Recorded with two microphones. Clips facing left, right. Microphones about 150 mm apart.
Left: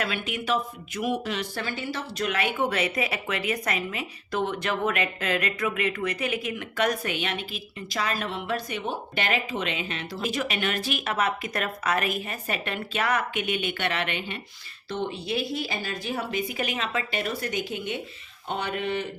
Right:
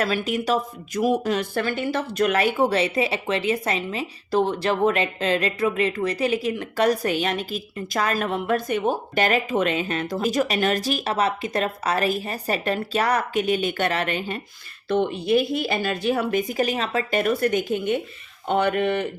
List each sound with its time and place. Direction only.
0.0 s speech: 40° right (ahead or behind)
14.8 s a woman's voice: 55° right (ahead or behind)